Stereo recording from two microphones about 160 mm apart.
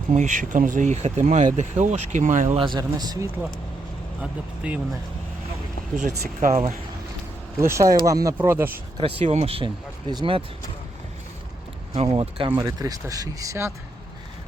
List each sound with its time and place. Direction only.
0.1 s speech: 50° right (ahead or behind)
2.6 s speech: 25° right (ahead or behind)
4.2 s speech: 10° right (ahead or behind)
6.0 s speech: 50° right (ahead or behind)
7.6 s speech: 20° right (ahead or behind)
9.0 s speech: 35° right (ahead or behind)
11.9 s speech: 40° right (ahead or behind); by 13.7 s 20° right (ahead or behind)